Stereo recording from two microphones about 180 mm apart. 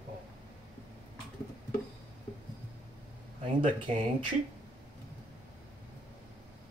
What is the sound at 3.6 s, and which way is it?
Speech, 30° right (ahead or behind).